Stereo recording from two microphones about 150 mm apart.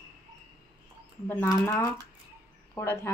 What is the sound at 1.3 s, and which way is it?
Speech, 20° left (ahead or behind).